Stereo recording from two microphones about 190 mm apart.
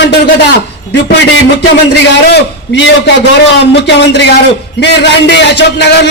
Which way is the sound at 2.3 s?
65° left (ahead or behind).